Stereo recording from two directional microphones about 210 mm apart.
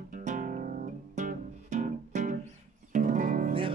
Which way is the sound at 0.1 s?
40° right (ahead or behind).